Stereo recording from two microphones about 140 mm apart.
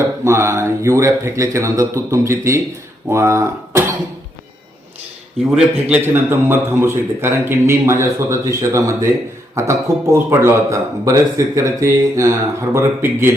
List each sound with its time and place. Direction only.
0.3 s speech: 20° right (ahead or behind)
5.9 s a man's voice: 15° right (ahead or behind)